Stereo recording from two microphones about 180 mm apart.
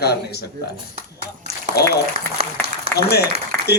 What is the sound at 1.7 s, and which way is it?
Speech, 60° left (ahead or behind).